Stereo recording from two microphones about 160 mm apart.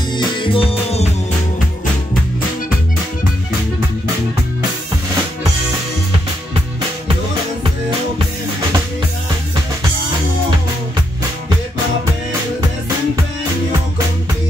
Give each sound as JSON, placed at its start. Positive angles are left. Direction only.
{"t": 0.2, "sound": "music", "side_deg": 30}